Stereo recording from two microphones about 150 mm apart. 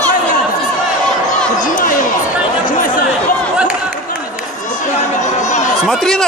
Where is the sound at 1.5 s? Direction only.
65° left (ahead or behind).